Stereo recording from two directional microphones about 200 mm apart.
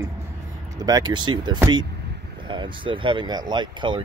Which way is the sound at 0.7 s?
20° right (ahead or behind).